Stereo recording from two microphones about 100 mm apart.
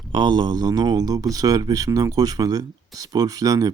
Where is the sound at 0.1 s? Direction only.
50° right (ahead or behind).